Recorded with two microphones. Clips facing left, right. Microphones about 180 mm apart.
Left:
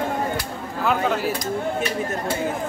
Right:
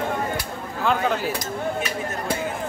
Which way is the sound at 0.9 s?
Centre (ahead or behind).